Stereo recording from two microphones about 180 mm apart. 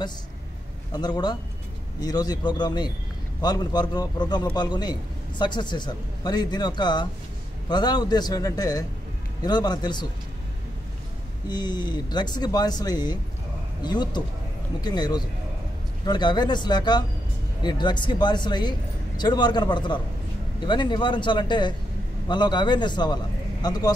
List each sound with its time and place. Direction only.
0.9 s speech: 25° left (ahead or behind)
11.4 s speech: 25° left (ahead or behind)